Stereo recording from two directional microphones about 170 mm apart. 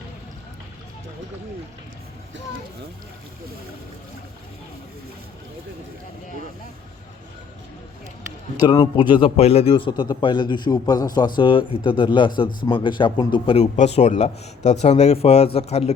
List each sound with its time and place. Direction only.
8.6 s a man's voice: 25° left (ahead or behind)
13.7 s a man's voice: 40° left (ahead or behind)